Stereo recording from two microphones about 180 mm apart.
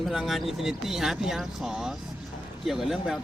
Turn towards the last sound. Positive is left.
turn(degrees=0)  # may be behind; listen again after turning